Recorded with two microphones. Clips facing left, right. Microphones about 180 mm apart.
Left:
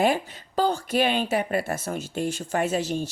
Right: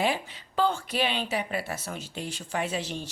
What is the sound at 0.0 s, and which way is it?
Speech, 40° left (ahead or behind).